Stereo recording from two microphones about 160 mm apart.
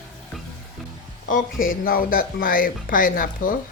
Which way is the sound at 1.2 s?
60° left (ahead or behind).